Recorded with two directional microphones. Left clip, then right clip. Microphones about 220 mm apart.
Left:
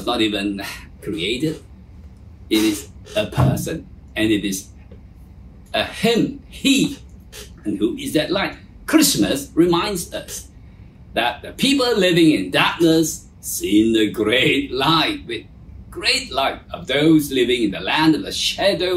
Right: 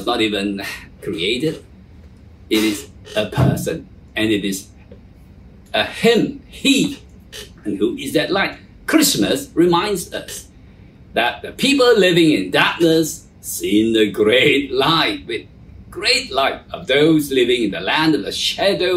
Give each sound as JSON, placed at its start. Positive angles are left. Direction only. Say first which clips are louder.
{"t": 0.0, "sound": "speech", "louder": "right 2 dB", "side_deg": 0}
{"t": 3.2, "sound": "speech", "louder": "right 1 dB", "side_deg": -5}
{"t": 5.7, "sound": "speech", "louder": "right 4 dB", "side_deg": -5}
{"t": 8.0, "sound": "speech", "louder": "right 3 dB", "side_deg": -5}